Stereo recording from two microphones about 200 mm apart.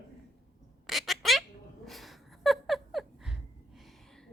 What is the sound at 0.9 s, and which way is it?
Squawk, centre (ahead or behind).